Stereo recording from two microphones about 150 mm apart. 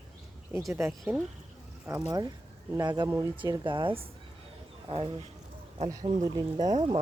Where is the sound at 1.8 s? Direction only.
20° right (ahead or behind); by 6.5 s 40° right (ahead or behind).